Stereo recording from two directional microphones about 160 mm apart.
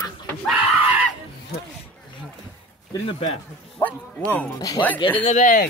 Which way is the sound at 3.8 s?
10° left (ahead or behind).